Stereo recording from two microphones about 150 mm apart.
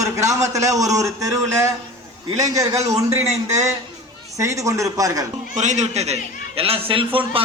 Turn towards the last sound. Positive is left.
turn(degrees=-35)  # may be behind; listen again after turning